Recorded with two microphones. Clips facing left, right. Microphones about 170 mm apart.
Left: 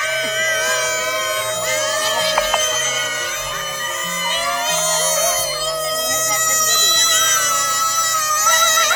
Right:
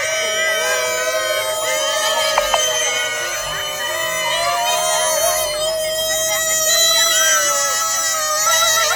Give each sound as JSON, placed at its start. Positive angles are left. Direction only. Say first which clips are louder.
{"t": 7.3, "sound": "music", "louder": "right 4 dB", "side_deg": -40}